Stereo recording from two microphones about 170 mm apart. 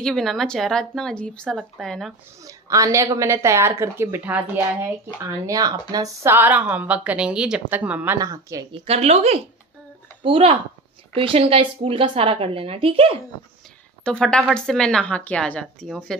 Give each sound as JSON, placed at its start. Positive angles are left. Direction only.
{"t": 0.0, "sound": "a woman's voice", "side_deg": 0}
{"t": 2.4, "sound": "speech", "side_deg": -20}
{"t": 8.2, "sound": "speech", "side_deg": -20}
{"t": 8.7, "sound": "a woman's voice", "side_deg": -35}
{"t": 14.0, "sound": "a woman's voice", "side_deg": 5}